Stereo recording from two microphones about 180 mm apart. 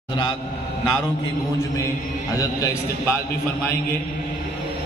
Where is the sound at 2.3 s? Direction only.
20° left (ahead or behind).